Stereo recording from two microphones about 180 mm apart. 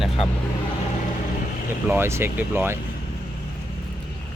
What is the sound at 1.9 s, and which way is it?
Speech, 15° right (ahead or behind).